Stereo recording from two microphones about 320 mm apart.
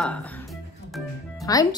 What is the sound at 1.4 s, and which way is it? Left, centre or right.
Music, centre.